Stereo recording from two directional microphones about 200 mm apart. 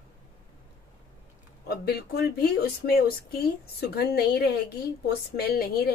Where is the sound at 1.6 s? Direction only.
55° left (ahead or behind).